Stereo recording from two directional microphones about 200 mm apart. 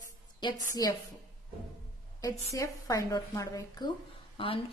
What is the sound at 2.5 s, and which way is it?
A woman's voice, 15° left (ahead or behind).